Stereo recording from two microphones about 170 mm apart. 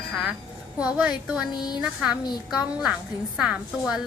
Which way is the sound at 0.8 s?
5° right (ahead or behind).